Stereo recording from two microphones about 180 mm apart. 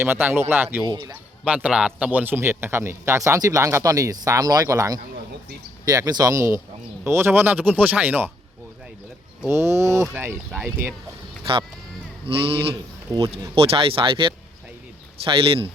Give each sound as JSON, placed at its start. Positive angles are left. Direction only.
{"t": 0.0, "sound": "a man's voice", "side_deg": -10}
{"t": 1.5, "sound": "a man's voice", "side_deg": -5}
{"t": 9.5, "sound": "a man's voice", "side_deg": -15}
{"t": 12.2, "sound": "a man's voice", "side_deg": -30}